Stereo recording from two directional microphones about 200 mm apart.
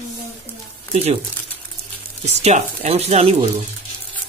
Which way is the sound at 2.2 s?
35° right (ahead or behind).